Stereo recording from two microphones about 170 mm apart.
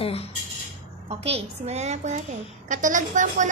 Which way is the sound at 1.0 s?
35° right (ahead or behind).